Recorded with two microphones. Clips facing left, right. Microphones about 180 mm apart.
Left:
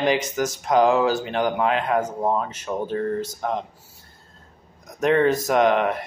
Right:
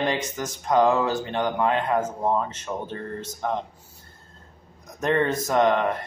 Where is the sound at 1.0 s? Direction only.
90° left.